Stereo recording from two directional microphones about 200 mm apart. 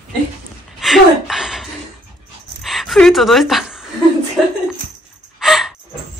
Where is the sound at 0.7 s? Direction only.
Centre (ahead or behind).